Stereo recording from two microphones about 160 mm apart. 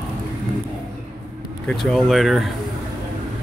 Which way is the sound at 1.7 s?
Centre (ahead or behind).